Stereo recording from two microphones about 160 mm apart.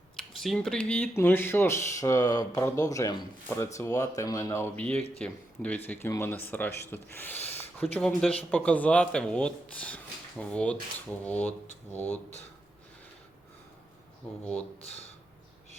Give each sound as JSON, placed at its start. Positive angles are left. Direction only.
{"t": 0.2, "sound": "speech", "side_deg": 0}
{"t": 14.8, "sound": "speech", "side_deg": 40}